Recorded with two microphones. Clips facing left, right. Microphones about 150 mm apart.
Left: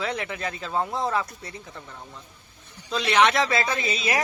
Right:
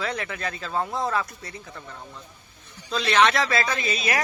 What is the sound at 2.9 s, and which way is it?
Speech, 15° left (ahead or behind).